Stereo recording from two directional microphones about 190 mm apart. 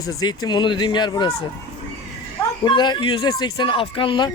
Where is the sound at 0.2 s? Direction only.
20° left (ahead or behind).